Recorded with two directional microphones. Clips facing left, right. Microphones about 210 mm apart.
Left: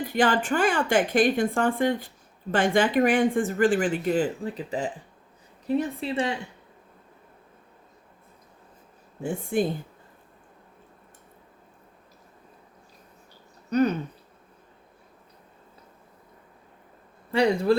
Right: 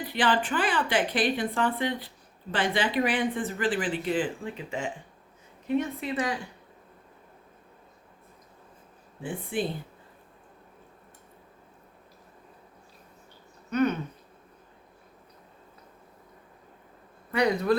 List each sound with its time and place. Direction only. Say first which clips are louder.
0.0 s a woman's voice: left 3 dB; 45° left (ahead or behind); by 6.4 s 25° left (ahead or behind)
9.2 s a woman's voice: left 5 dB; 45° left (ahead or behind)
13.7 s speech: left 3 dB; 35° left (ahead or behind)
17.3 s speech: left 3 dB; 30° left (ahead or behind)